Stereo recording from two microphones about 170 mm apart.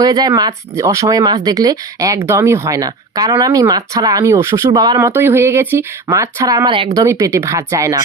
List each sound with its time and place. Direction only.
0.0 s speech: 20° right (ahead or behind)